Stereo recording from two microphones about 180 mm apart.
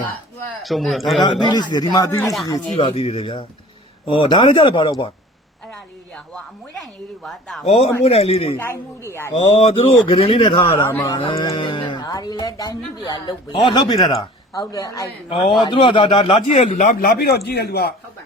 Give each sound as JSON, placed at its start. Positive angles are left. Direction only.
{"t": 0.6, "sound": "a woman's voice", "side_deg": 0}
{"t": 1.2, "sound": "speech", "side_deg": 25}
{"t": 2.2, "sound": "a woman's voice", "side_deg": 0}
{"t": 2.5, "sound": "speech", "side_deg": 30}
{"t": 6.1, "sound": "a woman's voice", "side_deg": 5}
{"t": 7.6, "sound": "speech", "side_deg": 35}
{"t": 8.5, "sound": "speech", "side_deg": 15}
{"t": 9.6, "sound": "speech", "side_deg": 30}
{"t": 10.8, "sound": "speech", "side_deg": 10}
{"t": 11.0, "sound": "speech", "side_deg": 25}
{"t": 16.5, "sound": "a man's voice", "side_deg": 45}